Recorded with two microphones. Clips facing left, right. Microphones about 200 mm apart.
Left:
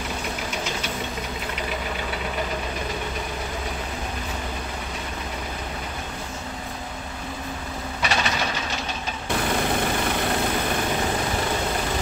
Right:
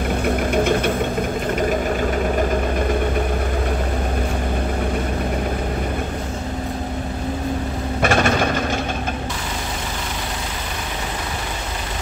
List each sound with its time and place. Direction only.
0.2 s engine knocking: 55° right (ahead or behind)
1.5 s vehicle: 45° right (ahead or behind)
8.0 s mechanisms: 50° right (ahead or behind)